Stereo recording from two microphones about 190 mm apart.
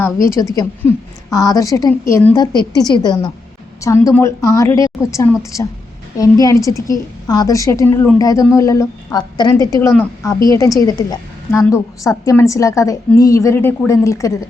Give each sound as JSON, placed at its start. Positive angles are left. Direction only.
{"t": 0.0, "sound": "a woman's voice", "side_deg": 15}